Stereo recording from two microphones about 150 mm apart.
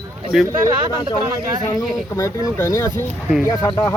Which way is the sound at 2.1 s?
20° left (ahead or behind).